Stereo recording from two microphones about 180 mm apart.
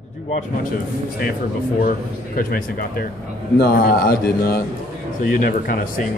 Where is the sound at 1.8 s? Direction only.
55° left (ahead or behind).